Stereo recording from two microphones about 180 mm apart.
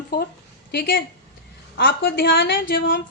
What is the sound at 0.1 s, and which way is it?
A woman's voice, 60° left (ahead or behind).